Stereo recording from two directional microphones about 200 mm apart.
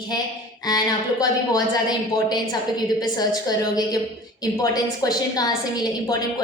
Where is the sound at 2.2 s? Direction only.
20° left (ahead or behind).